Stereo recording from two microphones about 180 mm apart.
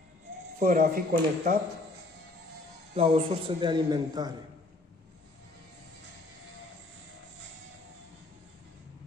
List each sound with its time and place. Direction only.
0.6 s speech: 50° right (ahead or behind)
2.9 s a man's voice: 35° right (ahead or behind)